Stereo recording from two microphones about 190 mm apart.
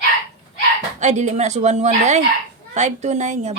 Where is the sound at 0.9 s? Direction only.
40° right (ahead or behind).